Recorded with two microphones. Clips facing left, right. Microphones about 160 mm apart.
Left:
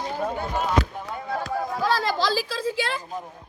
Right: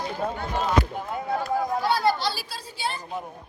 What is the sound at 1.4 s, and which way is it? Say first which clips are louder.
Speech: even; 90° left.